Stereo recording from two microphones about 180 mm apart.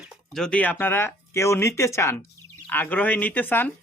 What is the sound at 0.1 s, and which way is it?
Speech, 5° left (ahead or behind).